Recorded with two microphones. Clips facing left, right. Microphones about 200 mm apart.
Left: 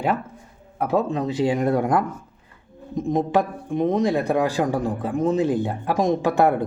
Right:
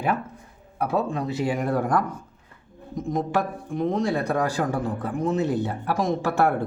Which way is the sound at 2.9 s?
20° left (ahead or behind).